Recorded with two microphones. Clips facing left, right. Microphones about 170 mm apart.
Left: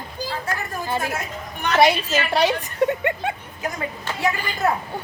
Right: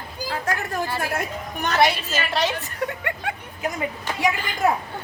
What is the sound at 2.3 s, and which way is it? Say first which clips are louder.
Speech: left 6 dB; 20° left (ahead or behind).